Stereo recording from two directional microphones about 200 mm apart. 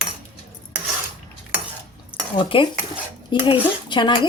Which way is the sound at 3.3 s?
25° left (ahead or behind).